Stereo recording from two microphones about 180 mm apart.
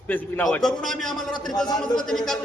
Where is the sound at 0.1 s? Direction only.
10° left (ahead or behind).